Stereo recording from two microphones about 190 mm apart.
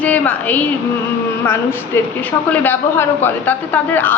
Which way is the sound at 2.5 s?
10° left (ahead or behind).